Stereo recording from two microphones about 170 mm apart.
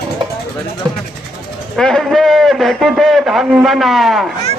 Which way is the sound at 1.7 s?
5° left (ahead or behind).